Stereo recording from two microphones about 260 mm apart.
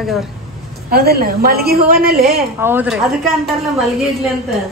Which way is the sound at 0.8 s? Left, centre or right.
Right.